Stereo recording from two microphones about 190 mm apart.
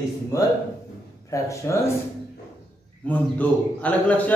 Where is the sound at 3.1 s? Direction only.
10° left (ahead or behind).